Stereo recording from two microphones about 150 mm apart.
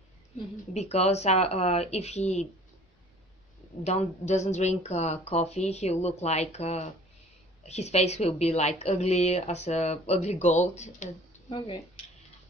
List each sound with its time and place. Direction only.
0.7 s speech: 45° left (ahead or behind)
3.8 s speech: 45° left (ahead or behind)
11.4 s speech: 35° left (ahead or behind)